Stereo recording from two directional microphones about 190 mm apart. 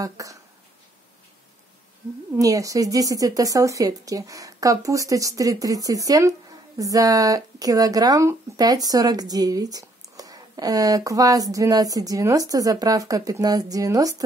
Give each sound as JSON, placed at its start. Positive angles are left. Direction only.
{"t": 0.0, "sound": "speech", "side_deg": -15}
{"t": 2.3, "sound": "speech", "side_deg": -20}